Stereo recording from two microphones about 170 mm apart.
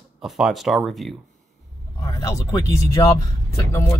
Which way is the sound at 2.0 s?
20° left (ahead or behind).